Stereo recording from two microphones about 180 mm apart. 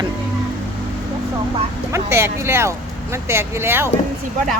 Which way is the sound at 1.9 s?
15° right (ahead or behind).